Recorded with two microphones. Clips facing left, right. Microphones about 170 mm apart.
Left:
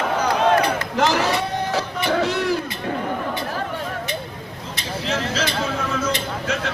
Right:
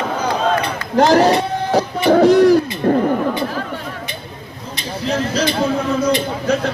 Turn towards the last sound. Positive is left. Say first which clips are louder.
# right 7 dB
turn(degrees=-35)  # may be behind; listen again after turning